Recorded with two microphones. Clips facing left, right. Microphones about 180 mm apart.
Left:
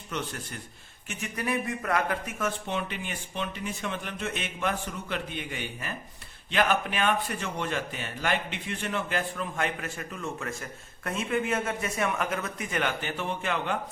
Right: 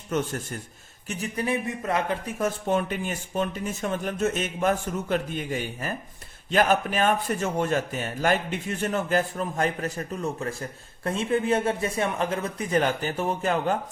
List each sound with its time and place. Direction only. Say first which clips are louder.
0.1 s speech: right 7 dB; 45° right (ahead or behind); by 2.3 s 25° right (ahead or behind)
2.4 s speech: right 9 dB; 45° right (ahead or behind)